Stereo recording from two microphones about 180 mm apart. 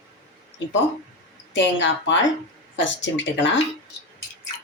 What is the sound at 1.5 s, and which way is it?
Speech, 90° left.